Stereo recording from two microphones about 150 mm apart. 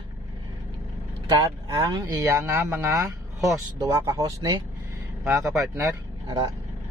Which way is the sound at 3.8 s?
20° right (ahead or behind).